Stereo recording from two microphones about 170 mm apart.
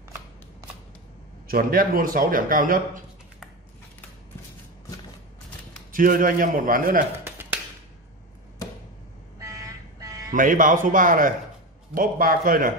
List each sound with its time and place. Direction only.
1.5 s speech: 60° right (ahead or behind)
5.9 s a man's voice: 55° right (ahead or behind)
9.4 s a sound: 20° right (ahead or behind)
10.3 s a man's voice: 55° right (ahead or behind)